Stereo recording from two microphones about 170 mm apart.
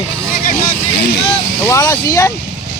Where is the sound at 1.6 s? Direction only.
20° left (ahead or behind).